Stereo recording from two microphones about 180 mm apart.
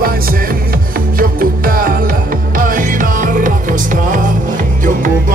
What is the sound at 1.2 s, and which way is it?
Music, 55° right (ahead or behind).